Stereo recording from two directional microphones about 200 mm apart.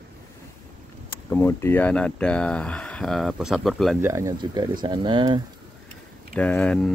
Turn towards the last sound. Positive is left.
turn(degrees=5)  # may be behind; listen again after turning